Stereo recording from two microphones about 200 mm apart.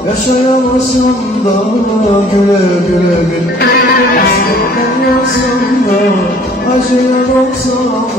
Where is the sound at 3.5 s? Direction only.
45° left (ahead or behind).